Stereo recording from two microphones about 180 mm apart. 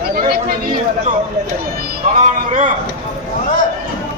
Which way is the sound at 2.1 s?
45° right (ahead or behind).